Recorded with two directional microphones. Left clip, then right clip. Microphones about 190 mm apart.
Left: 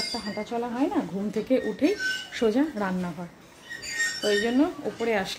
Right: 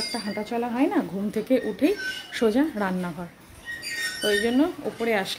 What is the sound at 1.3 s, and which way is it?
Speech, 5° right (ahead or behind).